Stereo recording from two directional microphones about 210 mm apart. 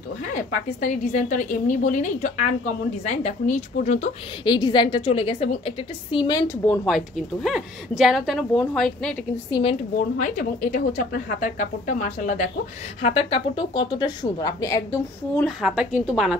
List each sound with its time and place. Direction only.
0.3 s speech: 40° left (ahead or behind)
4.5 s speech: 20° left (ahead or behind)
7.4 s a woman's voice: centre (ahead or behind)
9.5 s speech: 25° left (ahead or behind)
9.9 s speech: 40° left (ahead or behind); by 15.4 s 15° left (ahead or behind)
15.4 s a woman's voice: centre (ahead or behind)